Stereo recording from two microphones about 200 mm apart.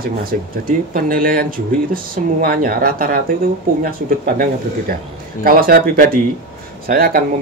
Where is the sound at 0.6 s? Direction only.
45° right (ahead or behind).